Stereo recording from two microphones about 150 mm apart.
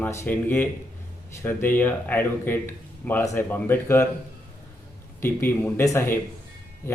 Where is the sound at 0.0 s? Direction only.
15° left (ahead or behind).